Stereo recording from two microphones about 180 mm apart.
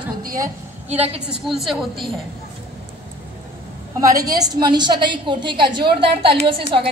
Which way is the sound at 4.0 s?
20° right (ahead or behind).